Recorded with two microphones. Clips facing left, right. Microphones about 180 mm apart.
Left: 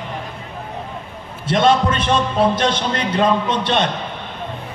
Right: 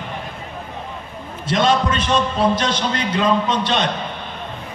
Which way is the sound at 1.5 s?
55° left (ahead or behind).